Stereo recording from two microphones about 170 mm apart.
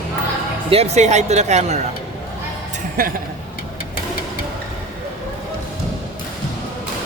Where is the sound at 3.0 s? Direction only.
60° right (ahead or behind).